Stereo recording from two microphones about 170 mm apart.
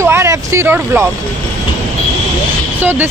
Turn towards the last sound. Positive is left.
turn(degrees=-10)  # may be behind; listen again after turning